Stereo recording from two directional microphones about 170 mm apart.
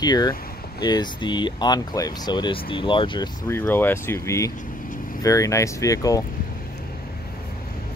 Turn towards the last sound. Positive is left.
turn(degrees=20)  # may be behind; listen again after turning